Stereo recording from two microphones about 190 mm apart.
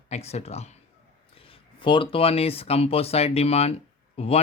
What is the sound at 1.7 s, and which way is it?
Speech, 25° left (ahead or behind).